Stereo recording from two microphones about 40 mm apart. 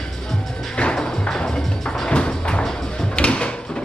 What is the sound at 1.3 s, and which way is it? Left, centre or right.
Music, left.